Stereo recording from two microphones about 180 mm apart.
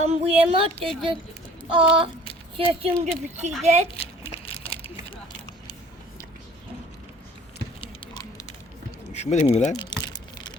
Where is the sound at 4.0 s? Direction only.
30° left (ahead or behind).